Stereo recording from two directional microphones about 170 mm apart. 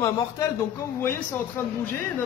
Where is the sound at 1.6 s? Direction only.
10° left (ahead or behind).